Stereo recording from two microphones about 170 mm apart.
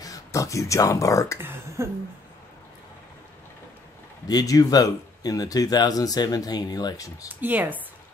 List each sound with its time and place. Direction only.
0.0 s speech: 20° left (ahead or behind)
1.4 s speech: 15° right (ahead or behind)
4.3 s speech: 20° left (ahead or behind)
7.2 s speech: 10° right (ahead or behind)